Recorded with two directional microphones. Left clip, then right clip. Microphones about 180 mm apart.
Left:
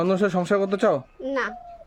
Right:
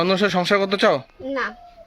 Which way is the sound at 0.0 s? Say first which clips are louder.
Right 3 dB; 5° left (ahead or behind).